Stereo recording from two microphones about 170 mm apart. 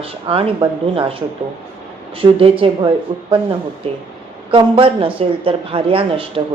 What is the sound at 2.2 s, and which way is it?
Speech, 35° right (ahead or behind).